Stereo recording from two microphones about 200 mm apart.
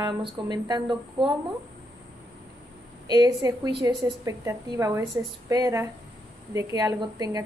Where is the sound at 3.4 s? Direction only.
15° right (ahead or behind).